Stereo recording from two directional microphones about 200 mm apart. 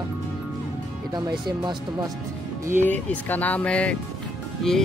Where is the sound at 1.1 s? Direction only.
20° right (ahead or behind).